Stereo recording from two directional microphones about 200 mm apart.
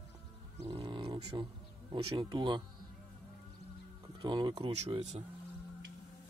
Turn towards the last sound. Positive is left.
turn(degrees=-35)  # may be behind; listen again after turning